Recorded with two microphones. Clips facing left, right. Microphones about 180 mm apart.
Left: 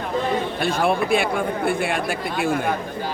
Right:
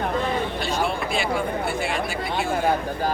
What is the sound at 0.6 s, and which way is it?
Speech, 55° left (ahead or behind).